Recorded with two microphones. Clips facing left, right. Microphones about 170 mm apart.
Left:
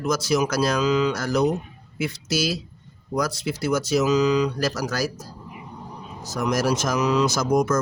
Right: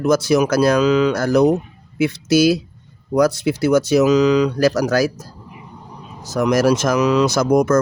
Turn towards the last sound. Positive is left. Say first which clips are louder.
# right 6 dB
turn(degrees=-65)  # may be behind; listen again after turning